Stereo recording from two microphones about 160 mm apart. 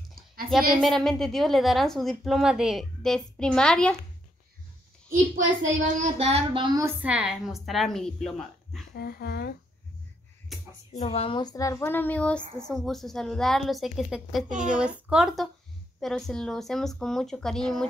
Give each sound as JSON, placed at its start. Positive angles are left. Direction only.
{"t": 0.7, "sound": "a woman's voice", "side_deg": 0}
{"t": 5.1, "sound": "a child's voice", "side_deg": -60}
{"t": 5.9, "sound": "a sound", "side_deg": -45}
{"t": 6.8, "sound": "a woman's voice", "side_deg": -10}
{"t": 8.9, "sound": "speech", "side_deg": 85}
{"t": 10.9, "sound": "a woman's voice", "side_deg": 40}